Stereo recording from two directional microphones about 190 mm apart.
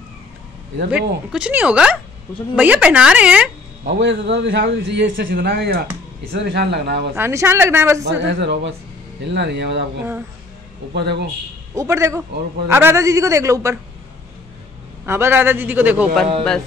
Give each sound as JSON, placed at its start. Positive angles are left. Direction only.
{"t": 1.3, "sound": "a man's voice", "side_deg": -5}
{"t": 3.8, "sound": "a man's voice", "side_deg": -70}
{"t": 6.3, "sound": "a man's voice", "side_deg": -65}
{"t": 7.2, "sound": "a man's voice", "side_deg": -15}
{"t": 8.0, "sound": "a man's voice", "side_deg": -65}
{"t": 10.9, "sound": "a man's voice", "side_deg": -60}
{"t": 11.7, "sound": "a man's voice", "side_deg": -15}
{"t": 15.0, "sound": "a man's voice", "side_deg": -10}